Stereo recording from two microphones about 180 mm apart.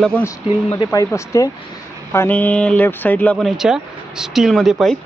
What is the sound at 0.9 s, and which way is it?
Speech, 20° left (ahead or behind).